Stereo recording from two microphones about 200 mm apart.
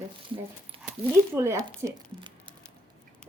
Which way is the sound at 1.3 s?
15° right (ahead or behind).